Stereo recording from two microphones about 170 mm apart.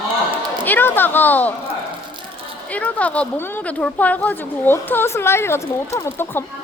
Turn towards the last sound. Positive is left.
turn(degrees=15)  # may be behind; listen again after turning